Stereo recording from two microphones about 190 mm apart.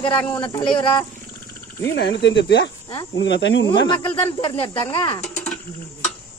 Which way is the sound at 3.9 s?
25° left (ahead or behind).